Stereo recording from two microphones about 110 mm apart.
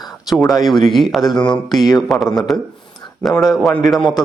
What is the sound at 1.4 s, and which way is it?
Speech, 45° left (ahead or behind).